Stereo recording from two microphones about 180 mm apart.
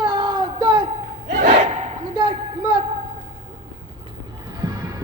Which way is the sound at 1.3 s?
45° right (ahead or behind).